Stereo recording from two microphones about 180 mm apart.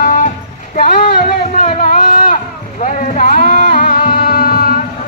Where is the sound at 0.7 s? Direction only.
45° left (ahead or behind).